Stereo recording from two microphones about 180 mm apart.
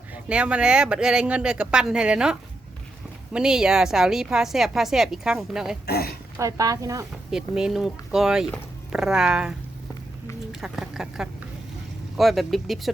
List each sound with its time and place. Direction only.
0.1 s a woman's voice: 5° right (ahead or behind)
5.8 s speech: 60° left (ahead or behind)
6.3 s speech: 20° right (ahead or behind)
7.3 s a woman's voice: 5° right (ahead or behind)